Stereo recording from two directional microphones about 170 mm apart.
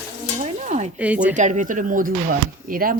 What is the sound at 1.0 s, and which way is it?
Speech, 5° right (ahead or behind).